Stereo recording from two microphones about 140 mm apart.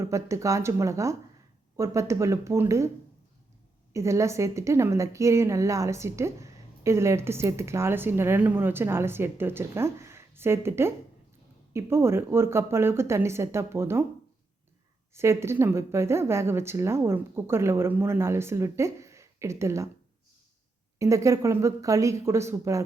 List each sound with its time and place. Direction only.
0.0 s a woman's voice: 20° right (ahead or behind)
3.9 s a woman's voice: 20° right (ahead or behind)
15.1 s a woman's voice: 20° right (ahead or behind)
21.0 s a woman's voice: 20° right (ahead or behind)